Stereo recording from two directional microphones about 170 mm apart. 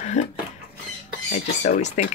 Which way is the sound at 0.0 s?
45° left (ahead or behind).